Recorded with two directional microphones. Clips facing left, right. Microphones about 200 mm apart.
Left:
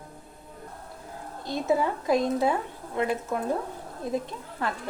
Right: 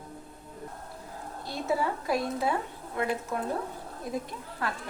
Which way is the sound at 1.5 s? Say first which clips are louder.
Left 4 dB; 20° left (ahead or behind).